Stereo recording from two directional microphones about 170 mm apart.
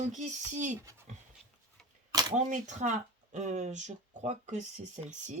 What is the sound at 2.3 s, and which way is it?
Speech, 45° right (ahead or behind).